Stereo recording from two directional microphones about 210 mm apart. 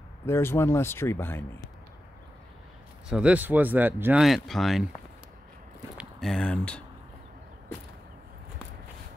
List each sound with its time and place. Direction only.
0.3 s speech: 10° left (ahead or behind)
3.1 s speech: 5° right (ahead or behind)
5.9 s speech: centre (ahead or behind)